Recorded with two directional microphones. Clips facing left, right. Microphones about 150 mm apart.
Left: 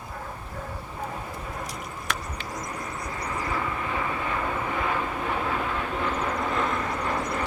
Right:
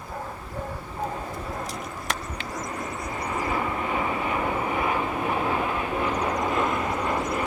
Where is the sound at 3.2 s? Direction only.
20° right (ahead or behind).